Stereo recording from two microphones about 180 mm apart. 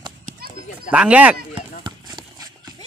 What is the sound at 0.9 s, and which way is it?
Speech, 5° right (ahead or behind).